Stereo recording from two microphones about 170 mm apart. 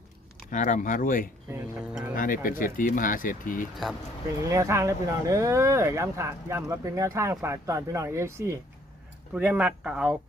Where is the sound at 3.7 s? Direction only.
Centre (ahead or behind).